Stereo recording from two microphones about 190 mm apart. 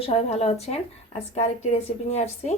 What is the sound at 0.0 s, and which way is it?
A woman's voice, 35° left (ahead or behind).